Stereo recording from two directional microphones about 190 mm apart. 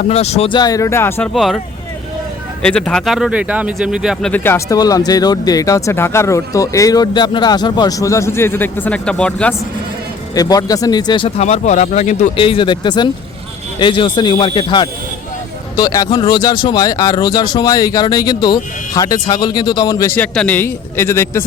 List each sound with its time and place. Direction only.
0.1 s speech: 35° left (ahead or behind); by 1.3 s 10° left (ahead or behind)
1.3 s speech: centre (ahead or behind)
10.3 s speech: 20° left (ahead or behind)
11.4 s speech: 40° left (ahead or behind); by 21.4 s 15° left (ahead or behind)